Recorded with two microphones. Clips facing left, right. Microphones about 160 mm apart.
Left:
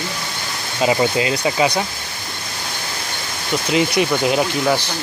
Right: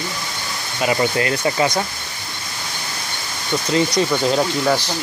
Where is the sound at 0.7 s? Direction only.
20° left (ahead or behind).